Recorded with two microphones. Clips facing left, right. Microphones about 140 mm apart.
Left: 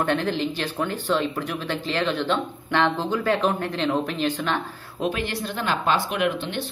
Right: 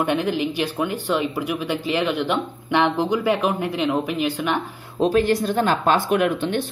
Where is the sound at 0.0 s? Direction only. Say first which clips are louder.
Right 2 dB; 10° right (ahead or behind).